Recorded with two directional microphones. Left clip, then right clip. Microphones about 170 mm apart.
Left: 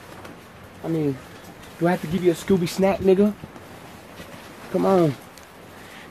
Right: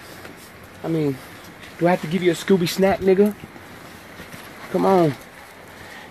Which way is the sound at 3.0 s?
30° left (ahead or behind).